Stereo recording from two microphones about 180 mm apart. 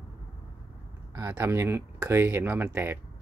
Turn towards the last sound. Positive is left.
turn(degrees=-10)  # may be behind; listen again after turning